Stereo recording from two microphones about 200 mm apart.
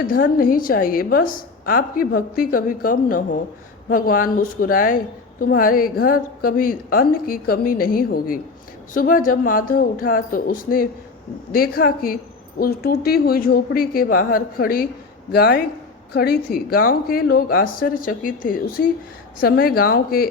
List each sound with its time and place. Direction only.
0.0 s a woman's voice: 45° left (ahead or behind)